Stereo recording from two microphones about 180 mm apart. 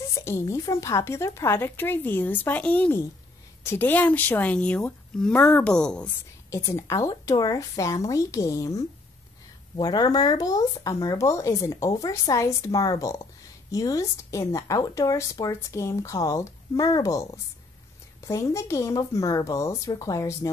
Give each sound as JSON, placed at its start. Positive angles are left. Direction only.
{"t": 0.1, "sound": "speech", "side_deg": 15}
{"t": 6.5, "sound": "speech", "side_deg": 15}
{"t": 18.2, "sound": "speech", "side_deg": 15}